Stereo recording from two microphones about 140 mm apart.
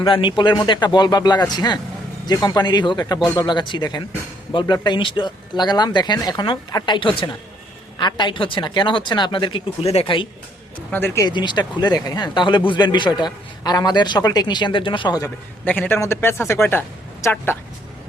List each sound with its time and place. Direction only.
0.0 s a man's voice: 35° left (ahead or behind)
10.9 s speech: 20° left (ahead or behind)
11.3 s a man's voice: 30° left (ahead or behind)
15.6 s a woman's voice: 10° left (ahead or behind)